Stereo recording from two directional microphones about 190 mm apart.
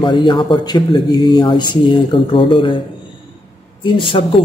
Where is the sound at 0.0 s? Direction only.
25° left (ahead or behind).